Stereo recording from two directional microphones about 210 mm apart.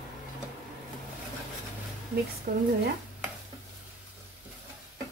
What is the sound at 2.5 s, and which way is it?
Speech, 50° right (ahead or behind).